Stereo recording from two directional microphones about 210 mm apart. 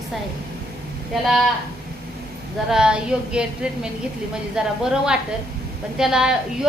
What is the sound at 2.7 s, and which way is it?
A woman's voice, 5° right (ahead or behind).